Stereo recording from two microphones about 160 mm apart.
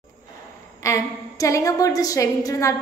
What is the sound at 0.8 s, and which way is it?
A woman's voice, 20° left (ahead or behind).